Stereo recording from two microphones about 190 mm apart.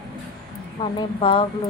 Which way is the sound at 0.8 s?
25° left (ahead or behind).